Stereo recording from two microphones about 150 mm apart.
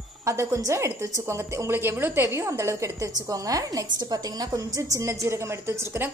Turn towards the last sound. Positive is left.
turn(degrees=-15)  # may be behind; listen again after turning